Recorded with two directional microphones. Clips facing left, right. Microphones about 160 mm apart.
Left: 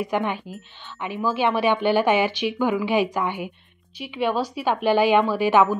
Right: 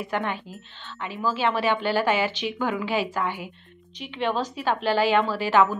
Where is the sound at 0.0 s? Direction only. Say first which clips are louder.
Left 4 dB; 15° left (ahead or behind).